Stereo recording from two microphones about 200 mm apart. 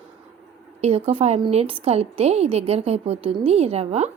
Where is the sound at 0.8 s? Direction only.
30° right (ahead or behind).